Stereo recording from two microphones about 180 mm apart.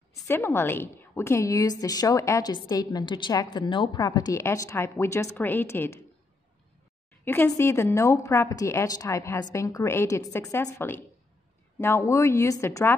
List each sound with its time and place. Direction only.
0.3 s a woman's voice: 10° left (ahead or behind)
7.2 s a woman's voice: 15° left (ahead or behind)